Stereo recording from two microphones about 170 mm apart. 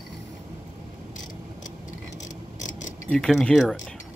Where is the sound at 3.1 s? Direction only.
5° left (ahead or behind).